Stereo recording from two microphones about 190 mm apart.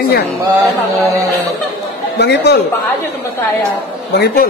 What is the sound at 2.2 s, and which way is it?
Speech, 60° left (ahead or behind).